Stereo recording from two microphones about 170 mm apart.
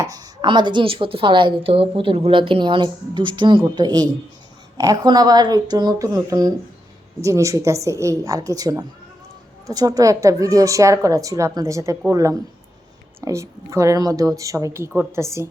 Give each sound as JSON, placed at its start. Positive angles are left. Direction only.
{"t": 0.0, "sound": "a woman's voice", "side_deg": -20}